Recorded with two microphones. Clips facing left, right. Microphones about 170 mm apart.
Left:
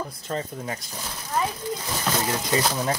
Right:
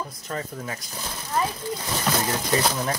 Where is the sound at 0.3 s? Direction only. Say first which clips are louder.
Left 2 dB; 35° left (ahead or behind).